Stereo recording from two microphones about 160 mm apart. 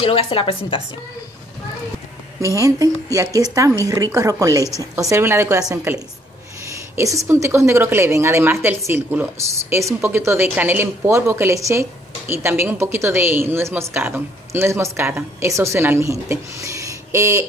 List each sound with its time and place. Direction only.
0.0 s a woman's voice: 35° left (ahead or behind)
2.4 s a woman's voice: 20° right (ahead or behind)
7.0 s a woman's voice: 20° right (ahead or behind)